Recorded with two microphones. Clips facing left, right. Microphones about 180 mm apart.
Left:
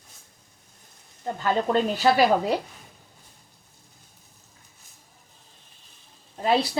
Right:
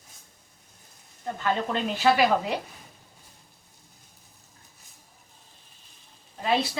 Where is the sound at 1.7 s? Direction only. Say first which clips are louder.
Left 3 dB; 40° left (ahead or behind).